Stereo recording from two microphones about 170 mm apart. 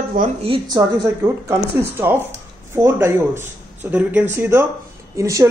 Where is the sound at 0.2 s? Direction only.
55° right (ahead or behind).